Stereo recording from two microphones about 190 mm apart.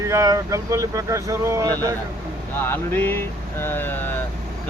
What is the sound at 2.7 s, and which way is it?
Speech, 10° left (ahead or behind).